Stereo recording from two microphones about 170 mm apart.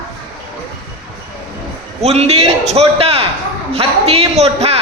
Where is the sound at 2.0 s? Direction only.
40° right (ahead or behind).